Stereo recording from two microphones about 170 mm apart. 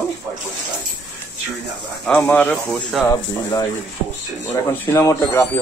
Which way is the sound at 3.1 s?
20° left (ahead or behind).